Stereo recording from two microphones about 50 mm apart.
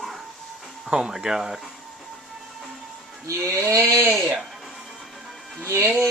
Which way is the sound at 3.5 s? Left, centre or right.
Right.